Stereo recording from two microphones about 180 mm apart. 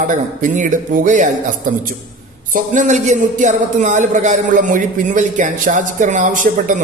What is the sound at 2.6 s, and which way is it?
Speech, 45° right (ahead or behind).